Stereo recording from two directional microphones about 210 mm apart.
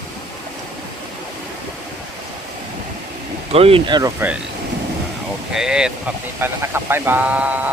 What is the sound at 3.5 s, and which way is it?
Speech, 25° right (ahead or behind).